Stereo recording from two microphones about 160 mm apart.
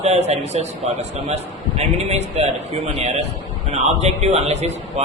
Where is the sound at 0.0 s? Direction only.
40° right (ahead or behind).